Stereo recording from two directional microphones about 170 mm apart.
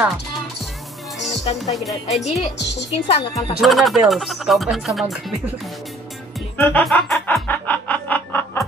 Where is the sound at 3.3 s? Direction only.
20° left (ahead or behind).